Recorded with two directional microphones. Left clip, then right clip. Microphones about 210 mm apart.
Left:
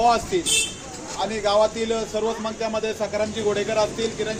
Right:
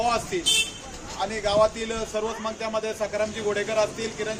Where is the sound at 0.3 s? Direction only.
5° right (ahead or behind).